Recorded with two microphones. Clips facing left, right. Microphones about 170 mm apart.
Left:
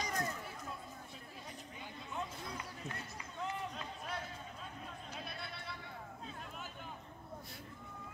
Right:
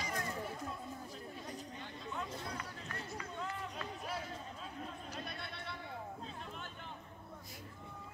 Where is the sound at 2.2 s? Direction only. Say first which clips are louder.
Even; 20° left (ahead or behind).